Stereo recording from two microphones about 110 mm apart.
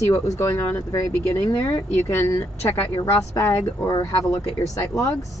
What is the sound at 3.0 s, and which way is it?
Speech, 35° left (ahead or behind).